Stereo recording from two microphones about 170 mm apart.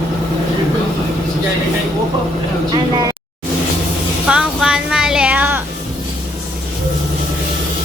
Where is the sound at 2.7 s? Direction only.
25° right (ahead or behind).